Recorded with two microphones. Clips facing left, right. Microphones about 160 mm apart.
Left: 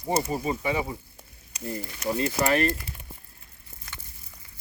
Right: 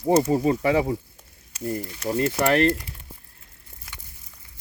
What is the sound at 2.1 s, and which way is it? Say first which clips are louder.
Speech: right 4 dB; 50° right (ahead or behind).